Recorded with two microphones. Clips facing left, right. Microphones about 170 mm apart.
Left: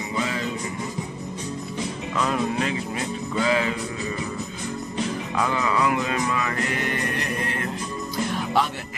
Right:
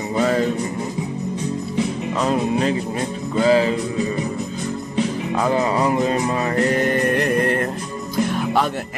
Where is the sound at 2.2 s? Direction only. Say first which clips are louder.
Right 4 dB; 30° right (ahead or behind).